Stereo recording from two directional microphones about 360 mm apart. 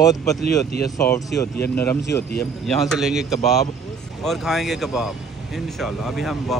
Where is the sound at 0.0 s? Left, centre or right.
Centre.